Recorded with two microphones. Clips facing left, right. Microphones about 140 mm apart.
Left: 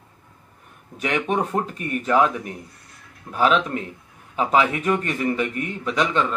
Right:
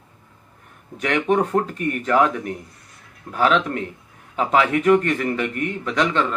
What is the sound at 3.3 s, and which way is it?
Speech, 15° left (ahead or behind).